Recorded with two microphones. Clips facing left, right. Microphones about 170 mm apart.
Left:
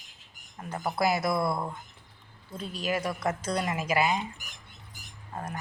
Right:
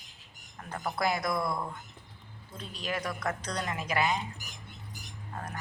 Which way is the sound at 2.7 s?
10° left (ahead or behind).